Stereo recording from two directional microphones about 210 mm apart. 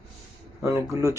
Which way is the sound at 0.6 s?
15° right (ahead or behind).